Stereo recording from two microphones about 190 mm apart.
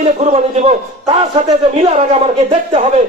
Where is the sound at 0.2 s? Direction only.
35° right (ahead or behind).